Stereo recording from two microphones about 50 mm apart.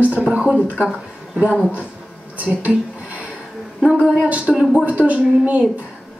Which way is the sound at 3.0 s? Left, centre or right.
Right.